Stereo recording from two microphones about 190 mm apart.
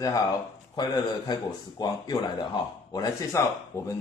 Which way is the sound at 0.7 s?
20° left (ahead or behind).